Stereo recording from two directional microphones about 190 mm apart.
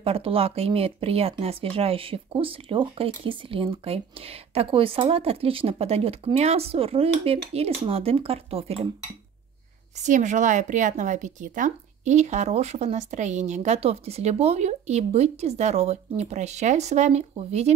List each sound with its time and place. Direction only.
0.0 s speech: 30° right (ahead or behind)
10.0 s speech: 40° right (ahead or behind)